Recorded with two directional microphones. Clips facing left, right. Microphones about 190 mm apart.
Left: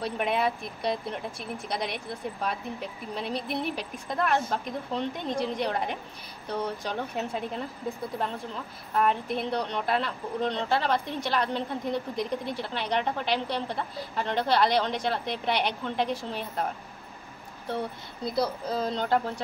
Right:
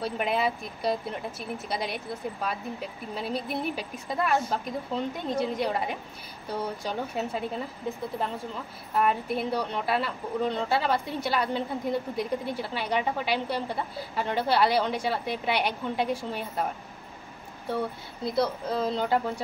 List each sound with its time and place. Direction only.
0.0 s speech: centre (ahead or behind)
8.9 s speech: 5° right (ahead or behind)
18.2 s speech: centre (ahead or behind)